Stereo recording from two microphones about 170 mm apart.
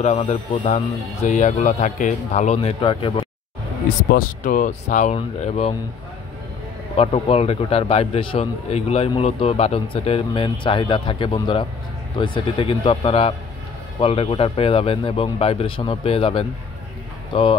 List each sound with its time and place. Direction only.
0.0 s a man's voice: 40° left (ahead or behind)
4.1 s speech: 55° left (ahead or behind); by 5.8 s 40° left (ahead or behind)
7.0 s a man's voice: 35° left (ahead or behind)